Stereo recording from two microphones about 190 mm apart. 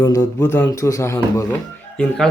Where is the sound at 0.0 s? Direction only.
15° left (ahead or behind).